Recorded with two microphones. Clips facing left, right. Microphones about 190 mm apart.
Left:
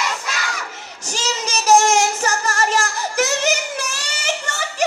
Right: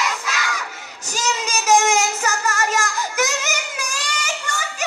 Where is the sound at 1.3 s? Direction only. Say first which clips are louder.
Left 2 dB; 35° left (ahead or behind).